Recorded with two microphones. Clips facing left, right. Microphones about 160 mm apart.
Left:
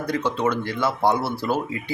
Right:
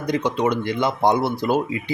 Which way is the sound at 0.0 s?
15° right (ahead or behind).